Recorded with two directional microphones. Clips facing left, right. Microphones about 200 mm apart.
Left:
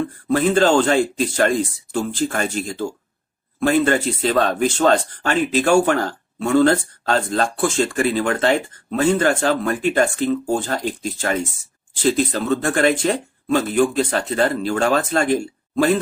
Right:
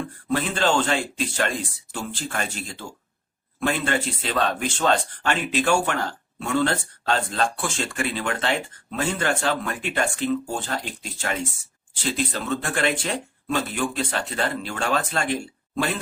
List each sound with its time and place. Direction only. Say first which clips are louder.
0.3 s speech: left 7 dB; 45° left (ahead or behind)